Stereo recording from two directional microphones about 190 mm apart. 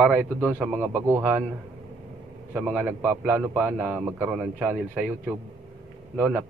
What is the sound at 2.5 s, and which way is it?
A man's voice, 10° right (ahead or behind).